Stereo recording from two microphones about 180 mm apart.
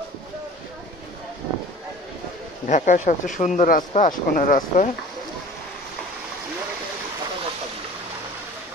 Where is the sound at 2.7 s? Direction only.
45° left (ahead or behind).